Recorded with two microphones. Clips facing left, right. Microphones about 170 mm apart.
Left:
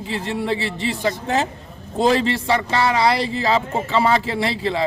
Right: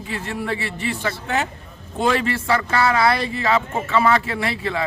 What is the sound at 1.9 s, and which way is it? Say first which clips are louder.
Speech: left 3 dB; 35° left (ahead or behind).